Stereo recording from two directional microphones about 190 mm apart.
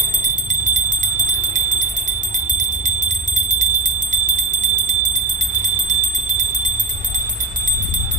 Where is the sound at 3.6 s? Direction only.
40° right (ahead or behind).